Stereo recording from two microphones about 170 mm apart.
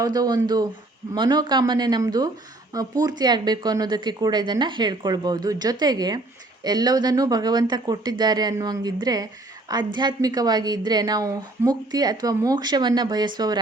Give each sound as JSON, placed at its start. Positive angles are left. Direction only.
{"t": 0.0, "sound": "speech", "side_deg": -20}